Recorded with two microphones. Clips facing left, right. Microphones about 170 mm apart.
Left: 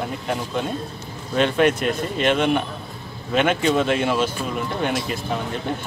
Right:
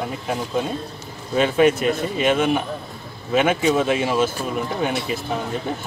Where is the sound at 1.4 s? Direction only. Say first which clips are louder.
Right 2 dB; 5° right (ahead or behind).